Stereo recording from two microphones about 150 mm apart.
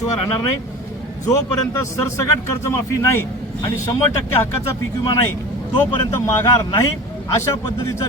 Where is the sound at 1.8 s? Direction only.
20° left (ahead or behind).